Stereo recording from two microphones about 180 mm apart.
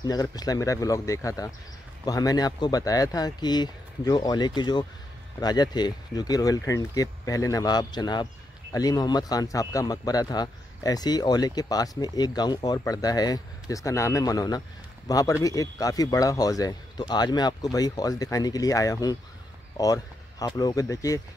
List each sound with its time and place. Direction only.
0.0 s a man's voice: 20° left (ahead or behind)